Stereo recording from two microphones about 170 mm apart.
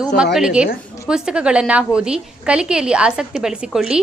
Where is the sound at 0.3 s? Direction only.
5° right (ahead or behind).